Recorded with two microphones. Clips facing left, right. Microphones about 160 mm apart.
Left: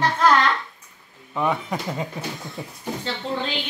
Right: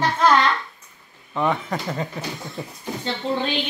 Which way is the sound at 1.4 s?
5° left (ahead or behind).